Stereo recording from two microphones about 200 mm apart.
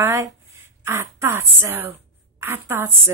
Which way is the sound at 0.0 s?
15° right (ahead or behind).